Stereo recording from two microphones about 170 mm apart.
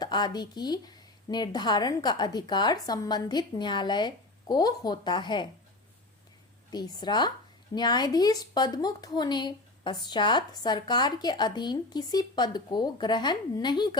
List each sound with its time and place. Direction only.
0.0 s a woman's voice: 25° left (ahead or behind)
6.7 s a woman's voice: 25° left (ahead or behind)